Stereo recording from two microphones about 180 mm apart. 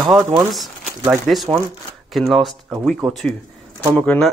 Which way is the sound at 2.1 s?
Centre (ahead or behind).